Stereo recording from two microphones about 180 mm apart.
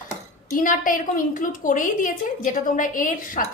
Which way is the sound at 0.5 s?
50° left (ahead or behind).